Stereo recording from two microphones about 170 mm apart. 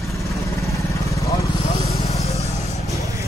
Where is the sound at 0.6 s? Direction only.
20° left (ahead or behind).